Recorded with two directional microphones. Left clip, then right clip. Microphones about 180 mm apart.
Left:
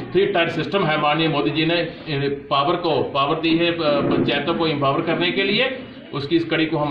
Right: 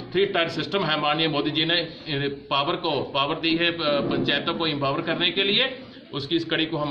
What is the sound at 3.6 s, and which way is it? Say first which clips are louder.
Speech: left 4 dB; 30° right (ahead or behind).